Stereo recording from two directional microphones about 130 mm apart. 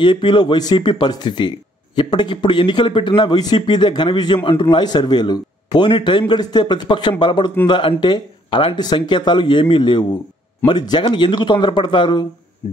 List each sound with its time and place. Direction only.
0.0 s speech: 40° left (ahead or behind)